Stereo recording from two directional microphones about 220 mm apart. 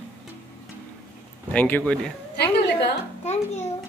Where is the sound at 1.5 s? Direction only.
5° left (ahead or behind).